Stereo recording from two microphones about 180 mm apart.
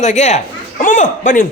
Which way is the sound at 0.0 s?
40° left (ahead or behind).